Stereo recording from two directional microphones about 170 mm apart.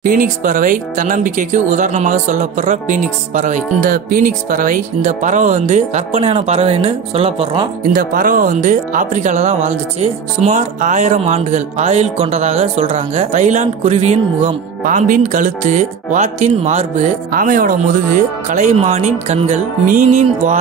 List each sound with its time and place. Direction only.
0.0 s speech: 55° right (ahead or behind); by 7.6 s 35° right (ahead or behind)
7.8 s speech: 55° right (ahead or behind)
14.8 s speech: 50° right (ahead or behind)